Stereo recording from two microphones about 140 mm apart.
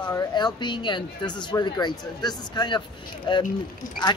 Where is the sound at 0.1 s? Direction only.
30° left (ahead or behind).